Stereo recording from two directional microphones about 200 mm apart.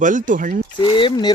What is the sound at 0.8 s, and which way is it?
Speech, 25° left (ahead or behind).